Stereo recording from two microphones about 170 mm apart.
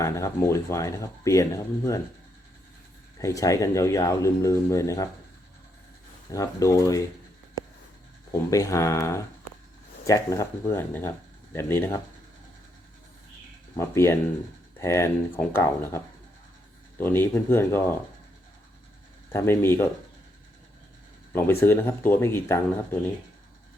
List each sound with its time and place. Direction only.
0.0 s speech: 20° left (ahead or behind)
3.2 s speech: 20° left (ahead or behind)
6.3 s speech: 20° left (ahead or behind)
8.3 s speech: 20° left (ahead or behind)
13.7 s speech: 15° left (ahead or behind)
17.0 s speech: 15° left (ahead or behind)
19.3 s speech: 15° left (ahead or behind)
21.3 s speech: 15° left (ahead or behind)